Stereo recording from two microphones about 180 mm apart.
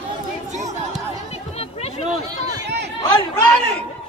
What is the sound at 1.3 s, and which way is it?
Chatter, 35° left (ahead or behind).